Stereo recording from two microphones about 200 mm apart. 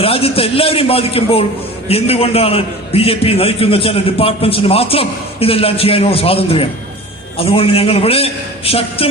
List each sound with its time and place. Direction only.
0.0 s a man's voice: 30° left (ahead or behind)